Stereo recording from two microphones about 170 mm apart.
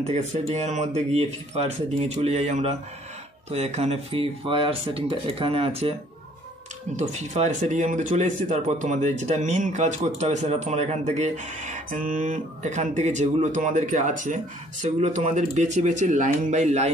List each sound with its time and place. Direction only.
0.0 s speech: 45° right (ahead or behind)
7.0 s speech: 40° right (ahead or behind)